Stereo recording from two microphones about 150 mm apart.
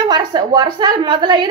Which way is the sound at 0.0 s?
30° right (ahead or behind).